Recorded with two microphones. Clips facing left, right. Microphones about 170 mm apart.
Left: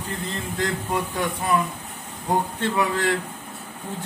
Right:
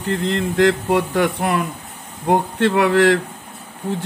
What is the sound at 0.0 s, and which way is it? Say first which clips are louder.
Speech: right 10 dB; 85° right.